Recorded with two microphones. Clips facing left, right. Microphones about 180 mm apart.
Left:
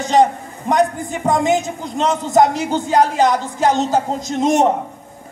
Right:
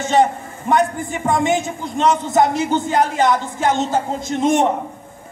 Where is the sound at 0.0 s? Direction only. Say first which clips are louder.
Left 2 dB; 35° left (ahead or behind).